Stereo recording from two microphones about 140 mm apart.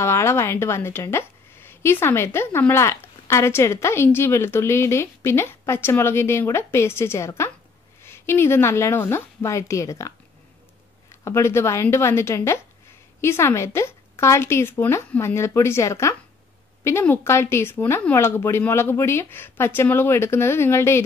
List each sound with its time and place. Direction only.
0.0 s a woman's voice: 20° left (ahead or behind)
11.2 s a woman's voice: 20° left (ahead or behind)